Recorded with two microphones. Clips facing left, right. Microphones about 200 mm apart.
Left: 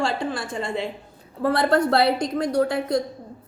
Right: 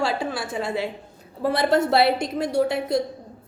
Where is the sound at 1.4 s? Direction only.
20° right (ahead or behind).